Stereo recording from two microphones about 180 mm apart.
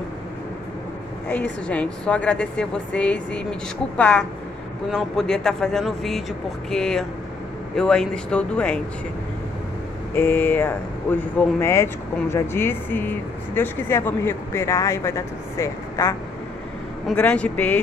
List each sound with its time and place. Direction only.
1.3 s speech: 5° left (ahead or behind)
10.1 s speech: 10° left (ahead or behind)